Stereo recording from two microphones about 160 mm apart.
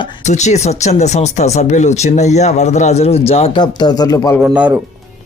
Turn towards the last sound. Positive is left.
turn(degrees=-10)  # may be behind; listen again after turning